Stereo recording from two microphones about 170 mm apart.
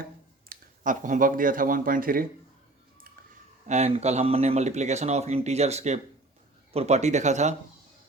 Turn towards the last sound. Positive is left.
turn(degrees=-45)  # may be behind; listen again after turning